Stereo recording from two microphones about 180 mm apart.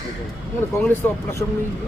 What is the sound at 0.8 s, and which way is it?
Speech, 15° left (ahead or behind).